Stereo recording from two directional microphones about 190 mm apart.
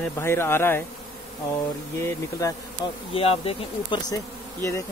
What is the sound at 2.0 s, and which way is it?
Speech, 15° left (ahead or behind).